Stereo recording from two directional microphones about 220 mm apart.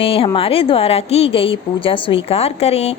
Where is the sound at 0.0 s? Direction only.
25° left (ahead or behind).